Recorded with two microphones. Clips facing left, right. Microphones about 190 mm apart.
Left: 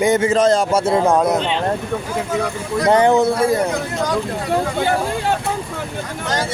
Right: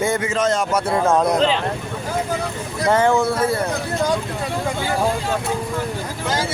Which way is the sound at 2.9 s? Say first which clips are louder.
Left 3 dB; 20° left (ahead or behind).